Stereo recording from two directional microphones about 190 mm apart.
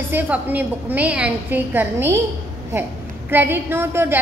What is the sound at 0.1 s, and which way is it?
A woman's voice, 10° right (ahead or behind).